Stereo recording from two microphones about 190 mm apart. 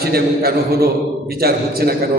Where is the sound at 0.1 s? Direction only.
55° right (ahead or behind).